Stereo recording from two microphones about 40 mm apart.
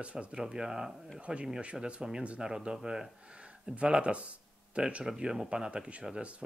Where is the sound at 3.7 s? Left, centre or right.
Right.